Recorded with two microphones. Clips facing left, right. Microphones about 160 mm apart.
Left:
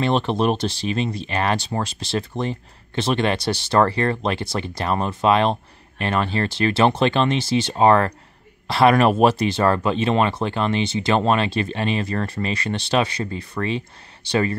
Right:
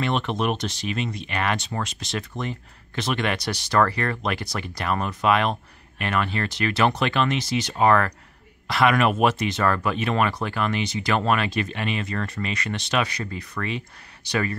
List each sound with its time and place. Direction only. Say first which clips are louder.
0.0 s speech: left 5 dB; 30° left (ahead or behind)